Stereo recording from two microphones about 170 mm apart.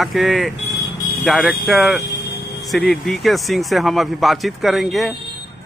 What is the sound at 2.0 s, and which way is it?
Music, 80° left.